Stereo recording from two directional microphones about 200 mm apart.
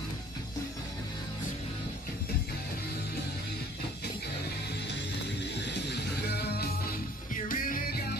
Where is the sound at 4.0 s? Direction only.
55° left (ahead or behind).